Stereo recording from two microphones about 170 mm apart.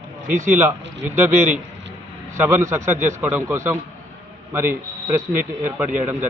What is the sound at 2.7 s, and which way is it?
Speech, 45° right (ahead or behind).